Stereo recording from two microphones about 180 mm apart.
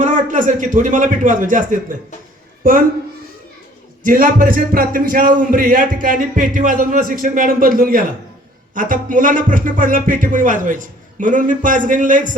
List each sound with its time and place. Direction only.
0.0 s speech: 45° right (ahead or behind)
4.0 s speech: 50° right (ahead or behind)